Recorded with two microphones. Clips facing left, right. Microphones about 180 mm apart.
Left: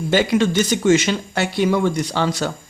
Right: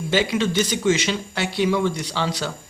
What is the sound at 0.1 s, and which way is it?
Speech, 50° left (ahead or behind).